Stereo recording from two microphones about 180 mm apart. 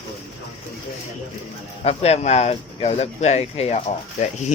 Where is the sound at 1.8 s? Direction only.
35° left (ahead or behind).